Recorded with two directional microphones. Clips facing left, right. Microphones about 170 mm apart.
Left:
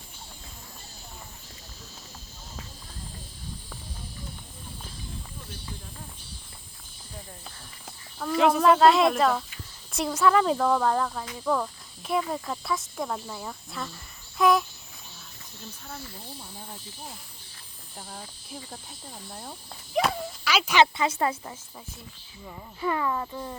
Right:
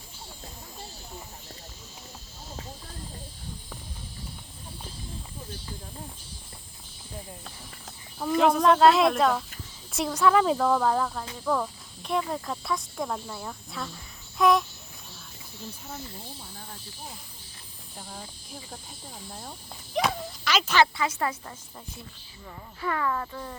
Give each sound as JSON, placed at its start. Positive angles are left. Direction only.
{"t": 8.4, "sound": "speech", "side_deg": 5}
{"t": 17.9, "sound": "speech", "side_deg": 0}
{"t": 20.8, "sound": "speech", "side_deg": 25}